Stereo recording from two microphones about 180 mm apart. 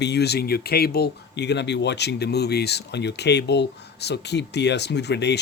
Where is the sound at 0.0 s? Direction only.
65° left (ahead or behind).